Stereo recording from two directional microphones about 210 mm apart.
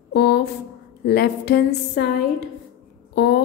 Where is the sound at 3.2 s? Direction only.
55° left (ahead or behind).